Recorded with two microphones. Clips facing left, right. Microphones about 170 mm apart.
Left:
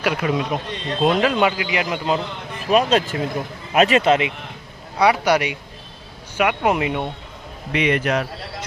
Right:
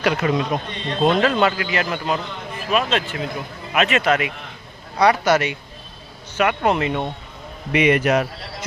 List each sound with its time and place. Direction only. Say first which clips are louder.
0.0 s a man's voice: right 1 dB; 5° left (ahead or behind)
2.6 s speech: left 4 dB; 40° left (ahead or behind)
4.9 s a man's voice: even; 10° left (ahead or behind)
7.7 s a man's voice: right 3 dB; 10° right (ahead or behind)